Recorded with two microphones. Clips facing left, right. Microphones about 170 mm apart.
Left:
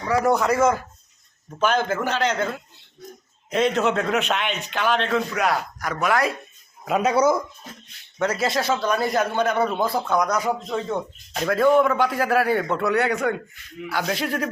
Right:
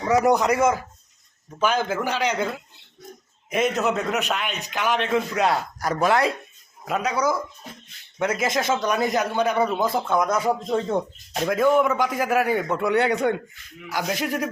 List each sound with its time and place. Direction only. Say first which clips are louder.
0.3 s a man's voice: left 3 dB; 15° right (ahead or behind)
3.5 s a man's voice: left 2 dB; 5° right (ahead or behind); by 6.3 s 25° right (ahead or behind)
7.0 s speech: left 5 dB; 25° left (ahead or behind)
8.2 s speech: left 1 dB; 20° right (ahead or behind)
11.4 s a man's voice: left 2 dB; 10° right (ahead or behind)
12.9 s a man's voice: right 3 dB; 25° right (ahead or behind)